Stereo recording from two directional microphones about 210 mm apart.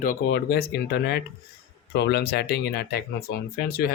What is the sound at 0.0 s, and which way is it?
Speech, 45° left (ahead or behind).